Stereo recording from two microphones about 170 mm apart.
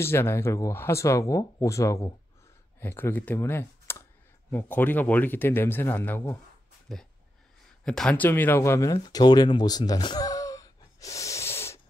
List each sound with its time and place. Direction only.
0.0 s speech: 15° left (ahead or behind)
6.9 s speech: centre (ahead or behind)